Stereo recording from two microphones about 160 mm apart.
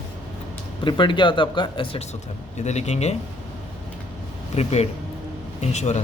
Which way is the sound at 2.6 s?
45° left (ahead or behind).